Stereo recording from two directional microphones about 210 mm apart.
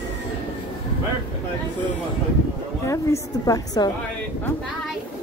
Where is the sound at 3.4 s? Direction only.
15° left (ahead or behind).